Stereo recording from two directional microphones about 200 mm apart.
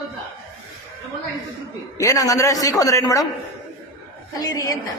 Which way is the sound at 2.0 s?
15° left (ahead or behind).